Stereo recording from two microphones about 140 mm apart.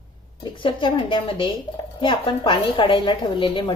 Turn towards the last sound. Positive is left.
turn(degrees=35)  # may be behind; listen again after turning